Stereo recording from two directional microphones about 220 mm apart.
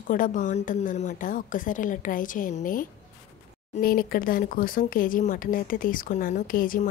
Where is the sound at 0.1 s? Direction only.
35° left (ahead or behind).